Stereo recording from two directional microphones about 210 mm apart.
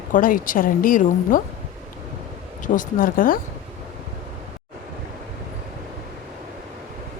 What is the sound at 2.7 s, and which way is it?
Speech, 40° left (ahead or behind).